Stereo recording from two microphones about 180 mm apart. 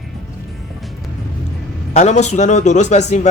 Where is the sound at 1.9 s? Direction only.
40° left (ahead or behind).